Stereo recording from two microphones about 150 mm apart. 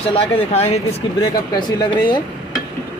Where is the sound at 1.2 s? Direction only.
25° left (ahead or behind).